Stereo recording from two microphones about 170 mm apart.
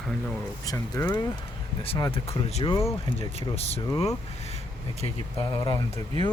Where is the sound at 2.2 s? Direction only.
35° left (ahead or behind).